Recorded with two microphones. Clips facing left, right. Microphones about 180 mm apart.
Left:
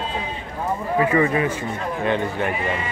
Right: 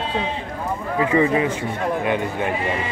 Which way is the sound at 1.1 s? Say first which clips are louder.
Right 1 dB; 20° right (ahead or behind).